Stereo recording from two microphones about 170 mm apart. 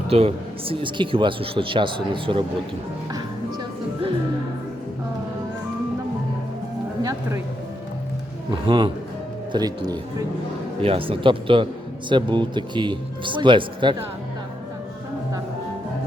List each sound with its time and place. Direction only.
0.1 s speech: 35° right (ahead or behind)
7.0 s a sound: 20° right (ahead or behind)
8.4 s a man's voice: 30° right (ahead or behind)